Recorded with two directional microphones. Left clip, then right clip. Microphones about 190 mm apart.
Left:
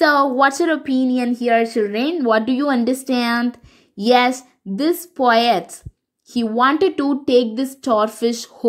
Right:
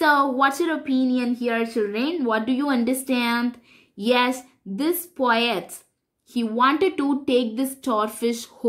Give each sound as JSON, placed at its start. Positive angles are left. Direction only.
{"t": 0.0, "sound": "speech", "side_deg": 25}